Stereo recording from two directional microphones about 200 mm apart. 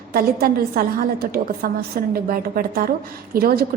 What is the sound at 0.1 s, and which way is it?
A woman's voice, 50° right (ahead or behind).